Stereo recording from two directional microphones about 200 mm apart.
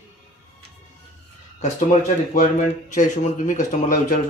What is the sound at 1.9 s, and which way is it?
Speech, 35° left (ahead or behind).